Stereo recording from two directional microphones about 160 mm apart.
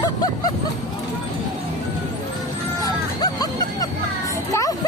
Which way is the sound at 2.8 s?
25° left (ahead or behind).